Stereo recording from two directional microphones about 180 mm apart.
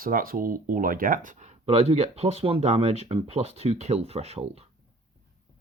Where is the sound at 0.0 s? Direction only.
50° right (ahead or behind); by 4.6 s 35° right (ahead or behind).